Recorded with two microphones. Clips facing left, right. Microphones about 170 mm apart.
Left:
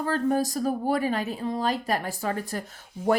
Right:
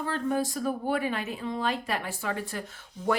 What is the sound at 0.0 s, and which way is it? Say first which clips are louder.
Speech: left 4 dB; 40° left (ahead or behind).